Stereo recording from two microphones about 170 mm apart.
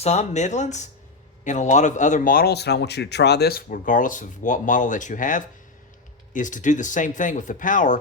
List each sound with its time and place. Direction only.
0.0 s speech: 40° left (ahead or behind)